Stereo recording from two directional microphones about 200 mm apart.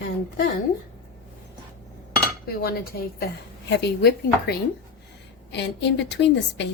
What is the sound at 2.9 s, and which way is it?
A woman's voice, 50° left (ahead or behind).